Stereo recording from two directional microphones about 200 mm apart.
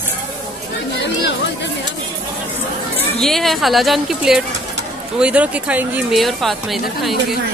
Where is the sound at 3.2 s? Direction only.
Centre (ahead or behind).